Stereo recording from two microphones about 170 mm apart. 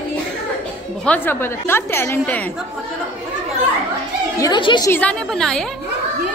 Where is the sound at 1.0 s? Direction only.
10° left (ahead or behind).